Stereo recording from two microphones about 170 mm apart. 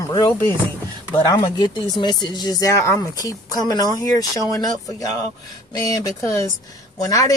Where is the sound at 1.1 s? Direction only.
20° left (ahead or behind).